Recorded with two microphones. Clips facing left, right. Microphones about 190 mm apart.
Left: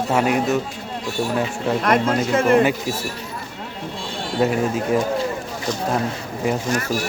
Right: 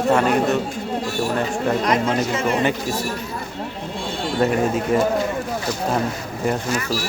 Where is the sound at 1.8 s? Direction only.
55° left (ahead or behind).